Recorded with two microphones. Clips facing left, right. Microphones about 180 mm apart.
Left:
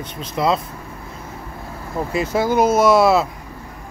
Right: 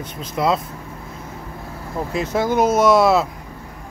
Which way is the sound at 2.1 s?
5° left (ahead or behind).